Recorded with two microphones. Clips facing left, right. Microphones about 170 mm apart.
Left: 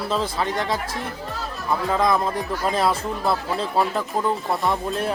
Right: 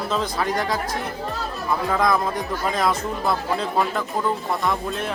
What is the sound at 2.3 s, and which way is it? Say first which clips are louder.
Speech: left 1 dB; 30° left (ahead or behind).